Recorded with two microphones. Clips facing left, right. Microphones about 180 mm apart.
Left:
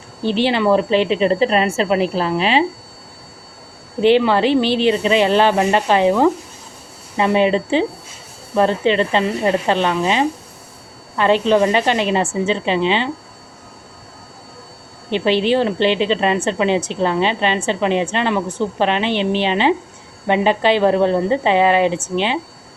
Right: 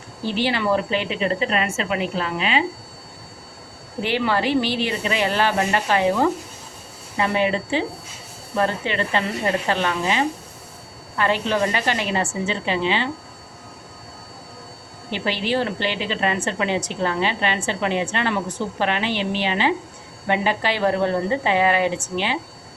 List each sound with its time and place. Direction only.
0.3 s a woman's voice: 25° left (ahead or behind)
4.0 s a woman's voice: 25° left (ahead or behind)
15.1 s a woman's voice: 25° left (ahead or behind)